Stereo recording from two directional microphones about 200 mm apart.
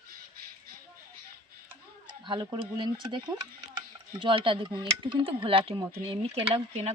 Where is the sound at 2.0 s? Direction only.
20° right (ahead or behind).